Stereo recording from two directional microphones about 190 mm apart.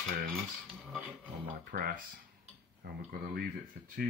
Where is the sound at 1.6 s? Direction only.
50° right (ahead or behind).